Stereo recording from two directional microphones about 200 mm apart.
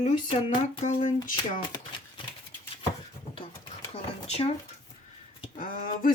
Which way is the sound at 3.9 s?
30° left (ahead or behind).